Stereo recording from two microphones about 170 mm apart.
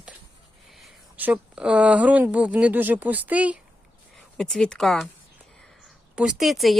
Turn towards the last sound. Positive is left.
turn(degrees=0)  # may be behind; listen again after turning